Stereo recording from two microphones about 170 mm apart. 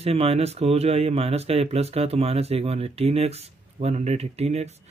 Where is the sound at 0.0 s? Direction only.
35° right (ahead or behind).